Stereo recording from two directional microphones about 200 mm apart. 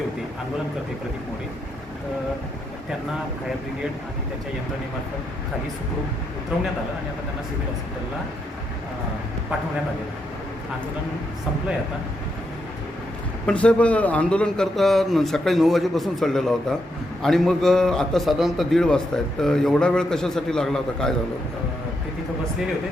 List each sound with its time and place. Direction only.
13.5 s a man's voice: 5° left (ahead or behind)